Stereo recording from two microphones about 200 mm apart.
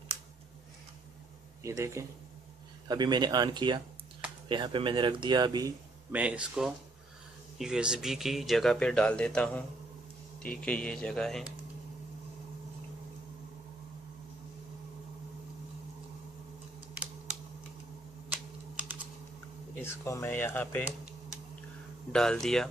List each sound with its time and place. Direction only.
1.6 s speech: 15° right (ahead or behind)
6.1 s speech: 5° right (ahead or behind)
19.8 s speech: 10° left (ahead or behind)
22.1 s speech: 5° left (ahead or behind)